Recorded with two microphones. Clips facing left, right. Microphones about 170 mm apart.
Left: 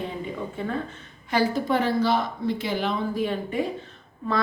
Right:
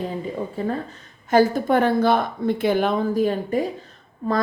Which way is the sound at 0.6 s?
40° right (ahead or behind).